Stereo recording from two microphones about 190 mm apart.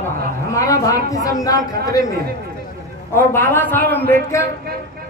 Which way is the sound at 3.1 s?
10° left (ahead or behind).